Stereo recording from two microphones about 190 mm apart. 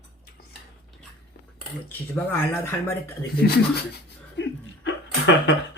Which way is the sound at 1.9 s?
10° left (ahead or behind).